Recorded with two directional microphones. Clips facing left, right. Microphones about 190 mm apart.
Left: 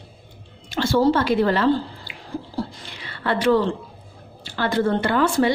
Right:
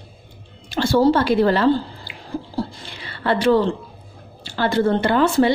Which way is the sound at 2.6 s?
30° right (ahead or behind).